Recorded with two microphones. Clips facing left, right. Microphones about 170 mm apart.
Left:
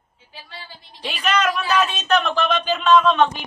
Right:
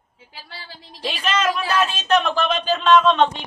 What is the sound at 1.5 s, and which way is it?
Speech, centre (ahead or behind).